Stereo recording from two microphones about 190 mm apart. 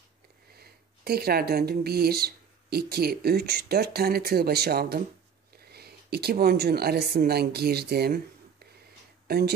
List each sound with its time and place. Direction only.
0.6 s a woman's voice: 55° right (ahead or behind)
9.3 s speech: 55° right (ahead or behind)